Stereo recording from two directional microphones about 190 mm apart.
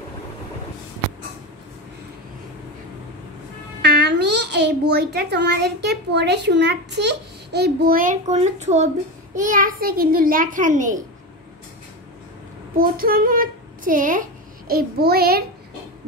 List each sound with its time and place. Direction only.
3.8 s a child's voice: 60° right (ahead or behind); by 11.1 s 40° right (ahead or behind)
12.7 s a child's voice: 50° right (ahead or behind)